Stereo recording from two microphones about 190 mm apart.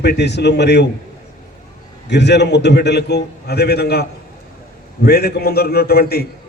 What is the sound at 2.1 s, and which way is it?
A man's voice, 65° left (ahead or behind).